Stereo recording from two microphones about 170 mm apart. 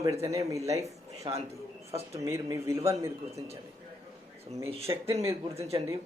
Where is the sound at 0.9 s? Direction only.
20° right (ahead or behind).